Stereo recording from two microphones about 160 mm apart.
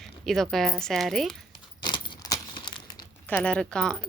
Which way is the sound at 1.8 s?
30° left (ahead or behind).